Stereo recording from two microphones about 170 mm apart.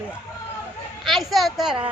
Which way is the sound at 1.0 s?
Centre (ahead or behind).